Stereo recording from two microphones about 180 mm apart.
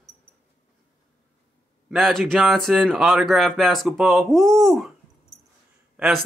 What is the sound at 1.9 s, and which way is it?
A man's voice, centre (ahead or behind).